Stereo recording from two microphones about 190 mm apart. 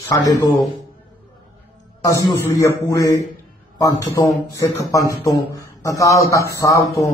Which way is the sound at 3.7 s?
15° left (ahead or behind).